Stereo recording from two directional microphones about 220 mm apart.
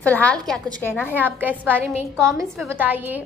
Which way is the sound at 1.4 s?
10° right (ahead or behind).